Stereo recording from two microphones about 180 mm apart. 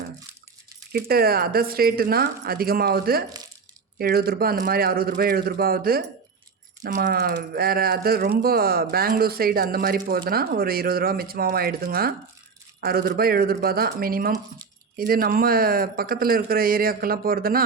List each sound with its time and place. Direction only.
0.9 s speech: 55° right (ahead or behind)